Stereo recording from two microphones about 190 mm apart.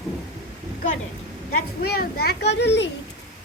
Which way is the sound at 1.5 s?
55° left (ahead or behind).